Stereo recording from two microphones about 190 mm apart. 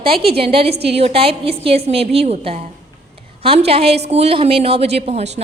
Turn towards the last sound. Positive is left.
turn(degrees=-35)  # may be behind; listen again after turning